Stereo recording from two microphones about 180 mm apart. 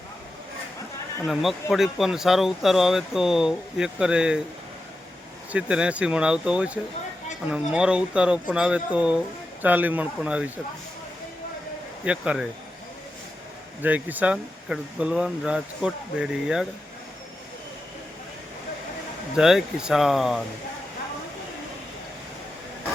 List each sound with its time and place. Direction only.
1.3 s speech: centre (ahead or behind)
5.5 s speech: 5° right (ahead or behind)
12.0 s speech: 5° right (ahead or behind)
13.8 s speech: 10° right (ahead or behind)
19.4 s speech: 5° right (ahead or behind)